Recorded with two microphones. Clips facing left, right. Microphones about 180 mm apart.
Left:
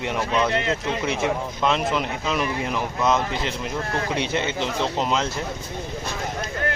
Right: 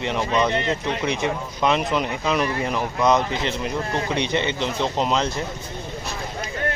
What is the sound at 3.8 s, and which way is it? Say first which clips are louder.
Speech: left 1 dB; 20° right (ahead or behind).